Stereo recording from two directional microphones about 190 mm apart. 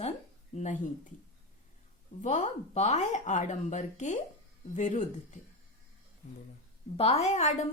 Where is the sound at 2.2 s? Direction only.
40° left (ahead or behind).